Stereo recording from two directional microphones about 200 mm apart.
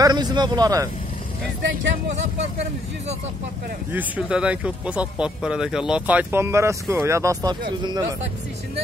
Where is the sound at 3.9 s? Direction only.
10° right (ahead or behind).